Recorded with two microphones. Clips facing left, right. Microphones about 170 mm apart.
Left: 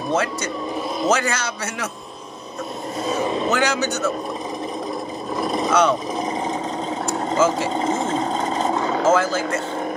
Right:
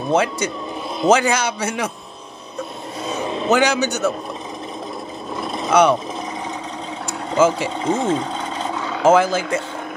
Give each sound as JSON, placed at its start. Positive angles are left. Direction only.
{"t": 0.1, "sound": "a man's voice", "side_deg": -15}
{"t": 3.1, "sound": "vehicle", "side_deg": 0}
{"t": 3.5, "sound": "a man's voice", "side_deg": -15}
{"t": 5.4, "sound": "a sound", "side_deg": 0}
{"t": 5.7, "sound": "a man's voice", "side_deg": -15}
{"t": 7.7, "sound": "a sound", "side_deg": 40}
{"t": 9.0, "sound": "a man's voice", "side_deg": -15}